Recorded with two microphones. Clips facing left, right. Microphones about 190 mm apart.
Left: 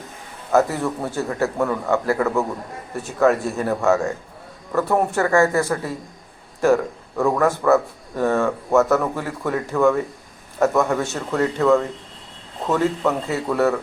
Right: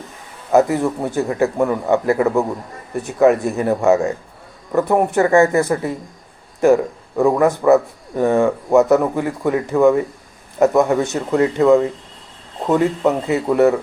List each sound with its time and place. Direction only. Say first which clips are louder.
0.5 s a man's voice: right 4 dB; 15° right (ahead or behind)